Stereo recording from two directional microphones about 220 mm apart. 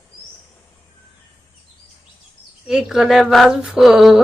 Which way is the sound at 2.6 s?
Centre (ahead or behind).